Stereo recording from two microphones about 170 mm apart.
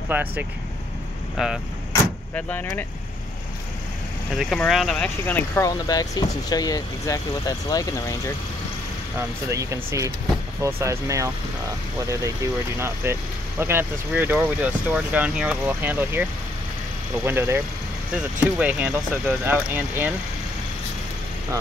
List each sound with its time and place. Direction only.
0.1 s speech: 10° right (ahead or behind)
2.3 s speech: 10° left (ahead or behind)
4.4 s speech: centre (ahead or behind); by 8.2 s 20° left (ahead or behind)
9.5 s speech: 15° right (ahead or behind)
12.7 s speech: 15° right (ahead or behind)